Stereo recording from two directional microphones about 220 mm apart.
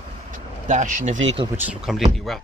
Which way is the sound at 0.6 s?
35° right (ahead or behind).